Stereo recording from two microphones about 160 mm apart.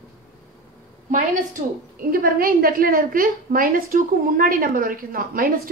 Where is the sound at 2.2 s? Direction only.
65° right (ahead or behind).